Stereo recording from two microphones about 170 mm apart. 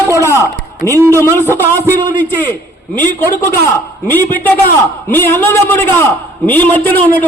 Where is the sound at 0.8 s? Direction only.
15° left (ahead or behind).